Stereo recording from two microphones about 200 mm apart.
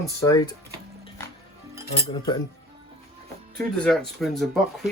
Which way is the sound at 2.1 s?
20° left (ahead or behind).